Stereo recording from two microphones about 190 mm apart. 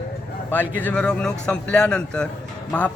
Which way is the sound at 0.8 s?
5° left (ahead or behind).